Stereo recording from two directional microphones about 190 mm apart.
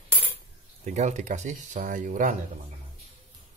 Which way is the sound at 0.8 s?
35° right (ahead or behind).